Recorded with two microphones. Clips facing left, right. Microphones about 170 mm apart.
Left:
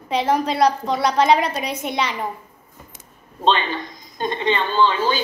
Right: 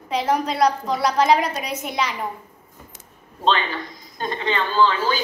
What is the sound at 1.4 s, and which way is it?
Speech, 30° left (ahead or behind).